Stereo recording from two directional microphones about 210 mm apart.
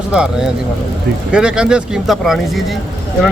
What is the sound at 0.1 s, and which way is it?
Speech, 5° right (ahead or behind).